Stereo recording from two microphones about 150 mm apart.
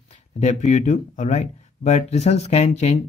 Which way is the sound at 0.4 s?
50° left (ahead or behind).